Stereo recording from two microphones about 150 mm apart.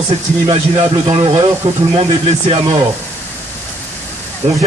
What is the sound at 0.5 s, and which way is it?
A man's voice, 35° right (ahead or behind).